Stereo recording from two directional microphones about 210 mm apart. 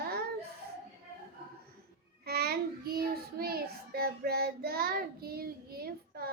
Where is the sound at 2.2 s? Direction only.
50° right (ahead or behind).